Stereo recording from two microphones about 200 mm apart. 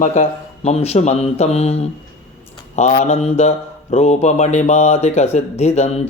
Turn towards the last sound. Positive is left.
turn(degrees=30)  # may be behind; listen again after turning